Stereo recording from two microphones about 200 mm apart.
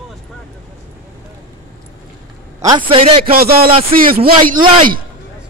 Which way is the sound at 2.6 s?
20° right (ahead or behind).